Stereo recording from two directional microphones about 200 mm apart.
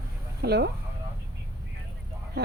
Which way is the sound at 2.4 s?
55° right (ahead or behind).